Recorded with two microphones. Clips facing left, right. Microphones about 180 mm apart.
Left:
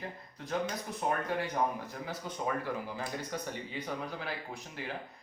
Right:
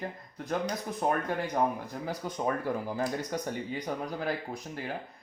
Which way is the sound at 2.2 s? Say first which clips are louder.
Right 4 dB; 50° right (ahead or behind).